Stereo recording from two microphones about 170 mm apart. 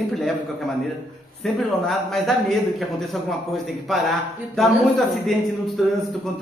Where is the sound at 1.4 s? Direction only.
Centre (ahead or behind).